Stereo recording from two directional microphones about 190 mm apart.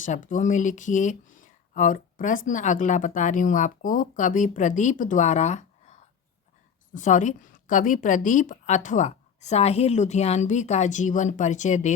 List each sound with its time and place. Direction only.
0.0 s speech: 45° left (ahead or behind)